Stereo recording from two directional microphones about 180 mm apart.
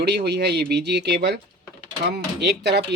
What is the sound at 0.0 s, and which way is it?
Speech, 65° right (ahead or behind).